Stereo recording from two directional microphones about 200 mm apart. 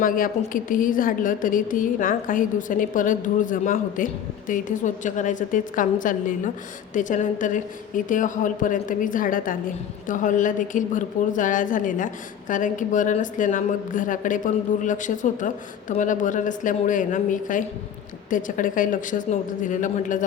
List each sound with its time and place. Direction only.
0.0 s a woman's voice: 45° left (ahead or behind)